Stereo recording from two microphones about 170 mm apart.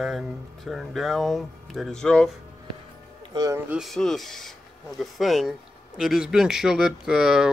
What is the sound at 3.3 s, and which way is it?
Speech, 20° right (ahead or behind).